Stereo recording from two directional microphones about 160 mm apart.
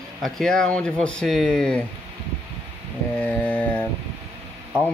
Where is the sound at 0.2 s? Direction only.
5° left (ahead or behind).